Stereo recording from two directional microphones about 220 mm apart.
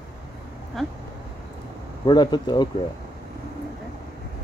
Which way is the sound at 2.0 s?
20° left (ahead or behind).